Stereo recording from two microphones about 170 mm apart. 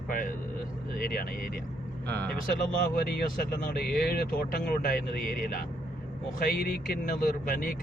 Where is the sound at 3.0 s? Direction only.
65° left (ahead or behind).